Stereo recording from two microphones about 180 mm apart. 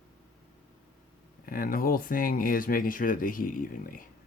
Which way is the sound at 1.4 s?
50° left (ahead or behind).